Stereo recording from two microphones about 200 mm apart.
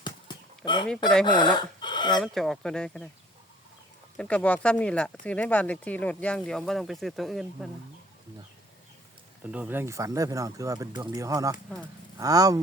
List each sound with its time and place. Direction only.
0.0 s a sound: 20° left (ahead or behind)
1.2 s speech: 20° left (ahead or behind)
2.1 s speech: centre (ahead or behind)
4.2 s speech: 5° left (ahead or behind)
9.4 s speech: 5° right (ahead or behind)